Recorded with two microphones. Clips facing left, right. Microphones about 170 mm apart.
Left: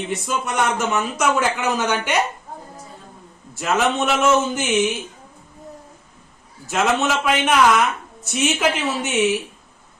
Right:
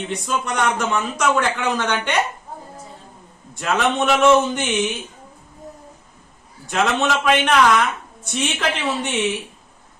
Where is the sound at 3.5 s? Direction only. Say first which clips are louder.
Even; 5° left (ahead or behind).